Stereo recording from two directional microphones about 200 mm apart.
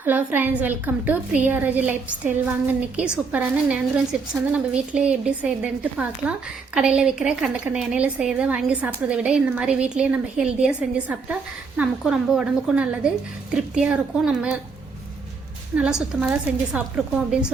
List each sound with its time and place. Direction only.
0.0 s a woman's voice: 10° right (ahead or behind)
15.7 s a woman's voice: 5° right (ahead or behind)